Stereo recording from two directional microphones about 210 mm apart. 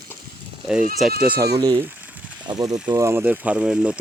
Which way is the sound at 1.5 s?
20° right (ahead or behind).